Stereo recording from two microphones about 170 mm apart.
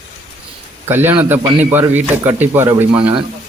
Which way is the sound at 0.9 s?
10° right (ahead or behind).